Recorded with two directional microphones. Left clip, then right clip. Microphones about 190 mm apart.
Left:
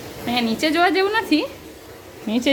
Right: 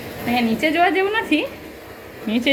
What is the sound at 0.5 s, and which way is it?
A woman's voice, 15° left (ahead or behind).